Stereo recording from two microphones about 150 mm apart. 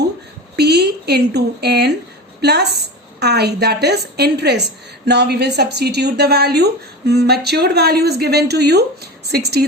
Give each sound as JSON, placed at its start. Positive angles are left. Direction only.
{"t": 0.5, "sound": "a woman's voice", "side_deg": -90}